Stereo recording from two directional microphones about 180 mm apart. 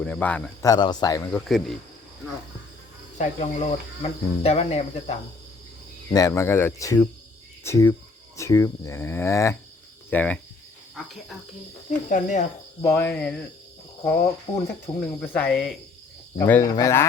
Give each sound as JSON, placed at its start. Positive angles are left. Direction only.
{"t": 0.0, "sound": "cricket", "side_deg": 5}
{"t": 0.7, "sound": "speech", "side_deg": 25}
{"t": 1.5, "sound": "speech", "side_deg": 0}
{"t": 3.2, "sound": "speech", "side_deg": 35}
{"t": 6.1, "sound": "cricket", "side_deg": 20}
{"t": 10.9, "sound": "speech", "side_deg": 0}
{"t": 12.0, "sound": "speech", "side_deg": 45}
{"t": 12.8, "sound": "cricket", "side_deg": 10}